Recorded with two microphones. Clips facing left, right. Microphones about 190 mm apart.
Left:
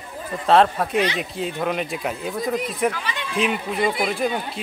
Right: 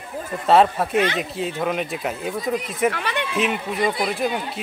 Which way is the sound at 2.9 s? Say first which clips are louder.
Right 4 dB; 60° right (ahead or behind).